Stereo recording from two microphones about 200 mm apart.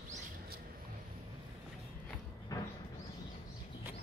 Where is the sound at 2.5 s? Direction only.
20° left (ahead or behind).